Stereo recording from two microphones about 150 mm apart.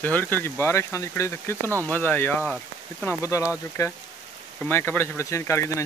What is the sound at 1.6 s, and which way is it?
Speech, 20° right (ahead or behind).